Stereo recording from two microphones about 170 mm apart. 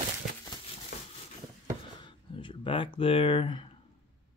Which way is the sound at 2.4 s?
30° left (ahead or behind).